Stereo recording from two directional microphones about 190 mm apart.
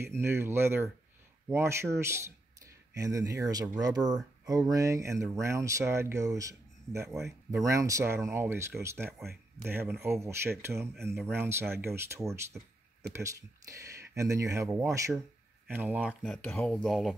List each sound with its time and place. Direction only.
0.0 s speech: 15° right (ahead or behind)
16.1 s speech: 5° left (ahead or behind)